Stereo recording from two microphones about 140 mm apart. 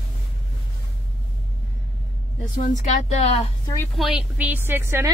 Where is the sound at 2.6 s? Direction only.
65° left (ahead or behind); by 3.5 s 45° left (ahead or behind).